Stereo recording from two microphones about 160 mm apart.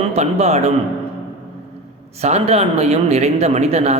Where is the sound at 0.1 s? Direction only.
40° right (ahead or behind).